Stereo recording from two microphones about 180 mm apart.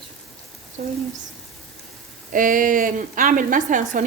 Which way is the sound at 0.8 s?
40° right (ahead or behind).